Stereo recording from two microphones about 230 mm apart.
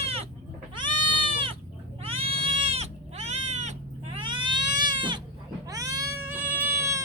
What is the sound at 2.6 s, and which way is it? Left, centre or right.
Goat, right.